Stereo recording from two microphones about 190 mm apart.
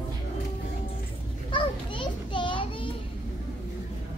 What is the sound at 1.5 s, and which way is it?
Children playing, 25° left (ahead or behind).